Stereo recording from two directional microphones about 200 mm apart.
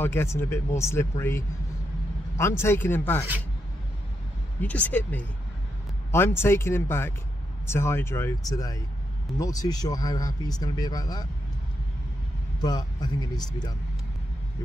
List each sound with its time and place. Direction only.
0.0 s speech: 10° left (ahead or behind)
4.6 s a man's voice: 10° left (ahead or behind)
12.6 s a man's voice: 20° left (ahead or behind)